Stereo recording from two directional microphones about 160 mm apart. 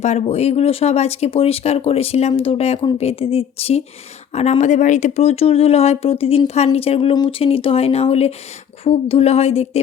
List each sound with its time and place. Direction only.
0.0 s speech: 40° left (ahead or behind)